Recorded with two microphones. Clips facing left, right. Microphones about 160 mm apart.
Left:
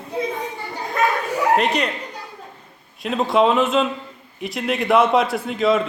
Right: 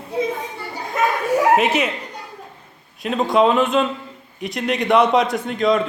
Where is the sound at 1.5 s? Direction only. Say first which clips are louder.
Right 2 dB; 5° right (ahead or behind).